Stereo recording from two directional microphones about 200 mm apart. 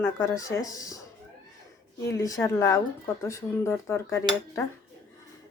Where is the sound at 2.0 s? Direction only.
15° left (ahead or behind).